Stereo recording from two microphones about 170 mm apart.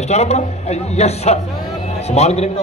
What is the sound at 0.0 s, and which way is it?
Speech, 40° left (ahead or behind).